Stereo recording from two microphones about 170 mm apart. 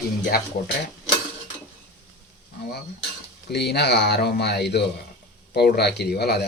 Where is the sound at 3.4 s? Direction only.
75° left (ahead or behind).